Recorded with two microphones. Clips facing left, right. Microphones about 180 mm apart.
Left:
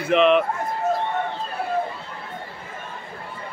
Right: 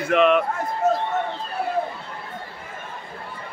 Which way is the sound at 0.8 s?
85° right.